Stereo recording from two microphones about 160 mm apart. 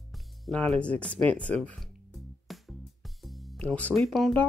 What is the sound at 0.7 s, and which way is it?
Speech, 5° left (ahead or behind).